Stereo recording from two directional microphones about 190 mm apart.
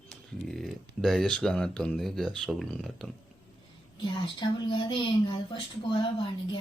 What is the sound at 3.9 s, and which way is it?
A woman's voice, 25° left (ahead or behind).